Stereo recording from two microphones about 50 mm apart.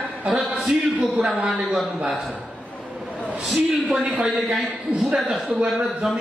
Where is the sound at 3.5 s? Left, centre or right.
Centre.